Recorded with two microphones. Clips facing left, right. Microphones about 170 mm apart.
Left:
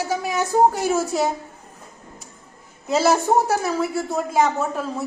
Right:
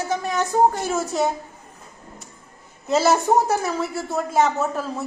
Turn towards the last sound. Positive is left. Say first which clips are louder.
# even
turn(degrees=0)  # may be behind; listen again after turning